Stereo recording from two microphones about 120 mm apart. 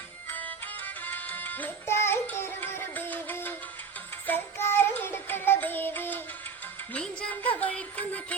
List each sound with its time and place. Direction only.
0.3 s music: 15° left (ahead or behind)